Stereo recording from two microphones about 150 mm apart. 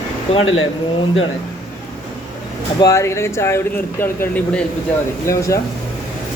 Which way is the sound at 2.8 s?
20° left (ahead or behind).